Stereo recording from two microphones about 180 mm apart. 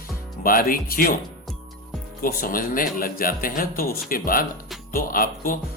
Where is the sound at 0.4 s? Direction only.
50° left (ahead or behind).